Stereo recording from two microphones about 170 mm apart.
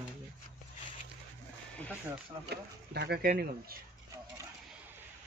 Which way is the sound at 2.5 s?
75° right (ahead or behind).